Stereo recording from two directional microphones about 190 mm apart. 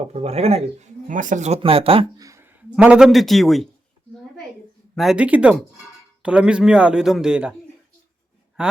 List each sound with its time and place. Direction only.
0.0 s speech: 35° right (ahead or behind)
2.2 s speech: 15° right (ahead or behind)
4.9 s a man's voice: 5° right (ahead or behind)
8.6 s a sound: 5° right (ahead or behind)